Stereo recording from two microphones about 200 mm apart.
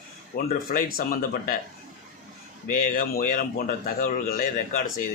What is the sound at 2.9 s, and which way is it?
A man's voice, 45° left (ahead or behind).